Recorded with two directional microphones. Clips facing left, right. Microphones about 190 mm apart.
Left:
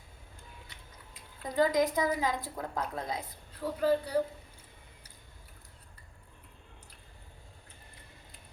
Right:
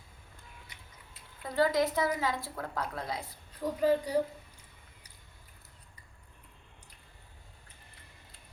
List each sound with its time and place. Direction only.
1.5 s a woman's voice: 15° left (ahead or behind)
3.6 s speech: 10° right (ahead or behind)